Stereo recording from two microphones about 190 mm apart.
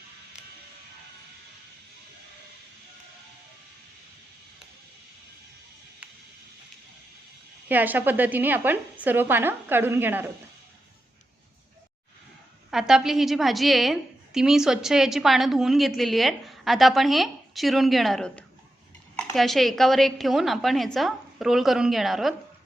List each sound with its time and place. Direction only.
6.0 s music: 10° right (ahead or behind)
7.7 s a woman's voice: 10° right (ahead or behind)
12.7 s a woman's voice: centre (ahead or behind)